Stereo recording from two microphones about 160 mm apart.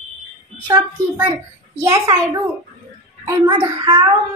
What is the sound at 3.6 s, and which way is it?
Speech, 15° right (ahead or behind).